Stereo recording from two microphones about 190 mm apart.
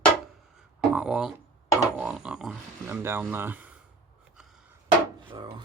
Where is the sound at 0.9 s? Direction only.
5° right (ahead or behind).